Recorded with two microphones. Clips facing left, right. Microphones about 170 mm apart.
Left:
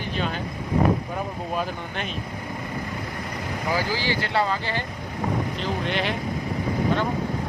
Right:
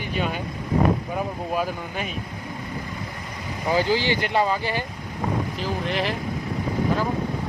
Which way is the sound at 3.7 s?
20° right (ahead or behind).